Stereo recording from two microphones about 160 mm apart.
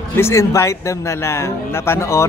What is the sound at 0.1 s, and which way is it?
Speech, 15° left (ahead or behind).